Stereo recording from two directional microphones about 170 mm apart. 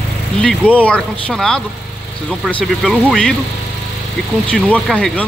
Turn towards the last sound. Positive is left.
turn(degrees=5)  # may be behind; listen again after turning